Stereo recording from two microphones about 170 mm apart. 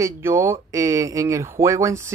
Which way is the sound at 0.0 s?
15° right (ahead or behind).